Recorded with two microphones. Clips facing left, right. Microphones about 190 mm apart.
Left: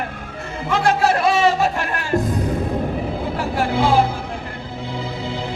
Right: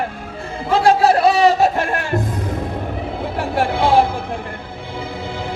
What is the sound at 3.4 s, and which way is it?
Speech, 60° right (ahead or behind).